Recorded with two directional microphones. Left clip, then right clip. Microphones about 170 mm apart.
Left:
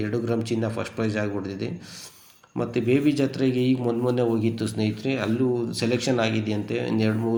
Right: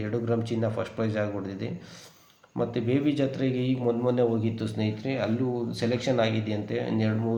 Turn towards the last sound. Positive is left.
turn(degrees=15)  # may be behind; listen again after turning